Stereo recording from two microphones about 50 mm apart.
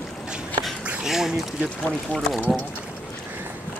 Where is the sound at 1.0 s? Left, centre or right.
Centre.